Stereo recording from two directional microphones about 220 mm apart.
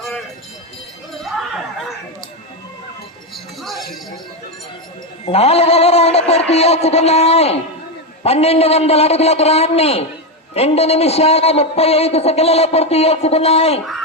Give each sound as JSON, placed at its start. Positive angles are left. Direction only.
{"t": 1.2, "sound": "chink", "side_deg": 0}
{"t": 3.3, "sound": "music", "side_deg": 0}
{"t": 5.2, "sound": "music", "side_deg": 25}
{"t": 6.5, "sound": "a man's voice", "side_deg": 30}